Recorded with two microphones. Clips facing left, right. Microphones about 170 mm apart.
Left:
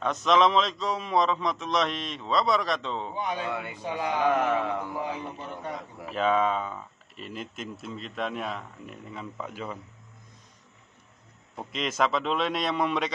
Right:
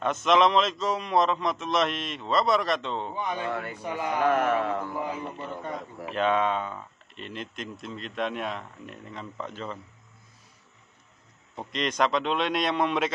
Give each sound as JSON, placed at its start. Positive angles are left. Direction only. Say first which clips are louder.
{"t": 0.0, "sound": "speech", "louder": "right 1 dB", "side_deg": 0}
{"t": 3.2, "sound": "a man's voice", "louder": "even", "side_deg": 15}
{"t": 6.0, "sound": "speech", "louder": "even", "side_deg": 0}
{"t": 11.5, "sound": "speech", "louder": "right 2 dB", "side_deg": 5}